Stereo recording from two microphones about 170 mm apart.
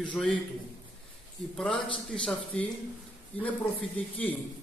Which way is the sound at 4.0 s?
10° left (ahead or behind).